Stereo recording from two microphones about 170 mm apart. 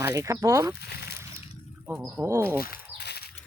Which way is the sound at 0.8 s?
70° left (ahead or behind).